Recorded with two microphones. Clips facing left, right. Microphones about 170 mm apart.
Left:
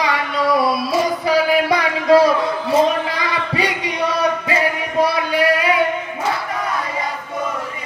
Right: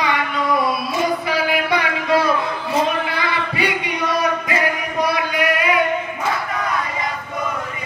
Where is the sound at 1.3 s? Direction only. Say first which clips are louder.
Left 4 dB; 35° left (ahead or behind).